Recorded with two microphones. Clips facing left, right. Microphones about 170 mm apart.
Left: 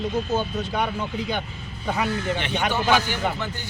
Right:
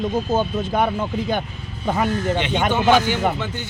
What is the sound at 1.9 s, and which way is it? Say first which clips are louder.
Speech: right 4 dB; 45° right (ahead or behind).